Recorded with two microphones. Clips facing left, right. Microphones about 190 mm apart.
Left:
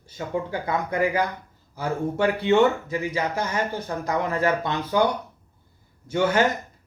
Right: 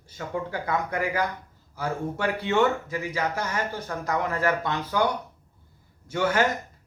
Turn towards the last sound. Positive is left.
turn(degrees=20)  # may be behind; listen again after turning